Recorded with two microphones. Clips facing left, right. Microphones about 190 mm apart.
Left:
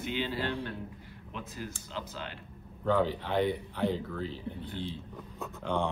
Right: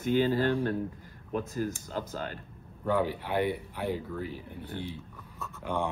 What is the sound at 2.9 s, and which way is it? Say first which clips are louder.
Speech: even; 10° right (ahead or behind).